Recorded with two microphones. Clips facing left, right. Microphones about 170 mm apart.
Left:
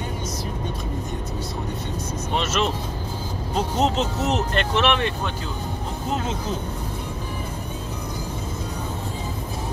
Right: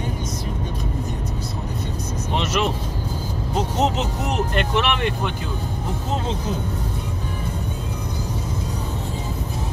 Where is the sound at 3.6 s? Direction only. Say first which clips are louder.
Even; 15° right (ahead or behind).